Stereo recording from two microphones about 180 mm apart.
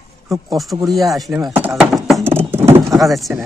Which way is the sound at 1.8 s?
Centre (ahead or behind).